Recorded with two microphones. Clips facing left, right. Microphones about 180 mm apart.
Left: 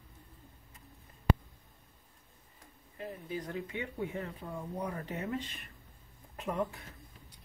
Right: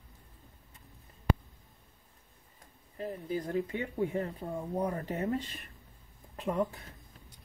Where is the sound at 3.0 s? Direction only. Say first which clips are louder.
Right 5 dB; 35° right (ahead or behind).